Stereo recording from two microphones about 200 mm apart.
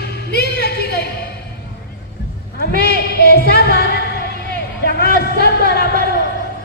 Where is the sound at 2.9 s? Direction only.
55° left (ahead or behind).